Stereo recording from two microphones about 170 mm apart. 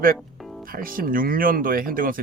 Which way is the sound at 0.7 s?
55° right (ahead or behind).